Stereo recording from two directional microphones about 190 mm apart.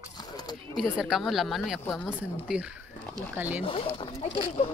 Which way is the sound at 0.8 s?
Centre (ahead or behind).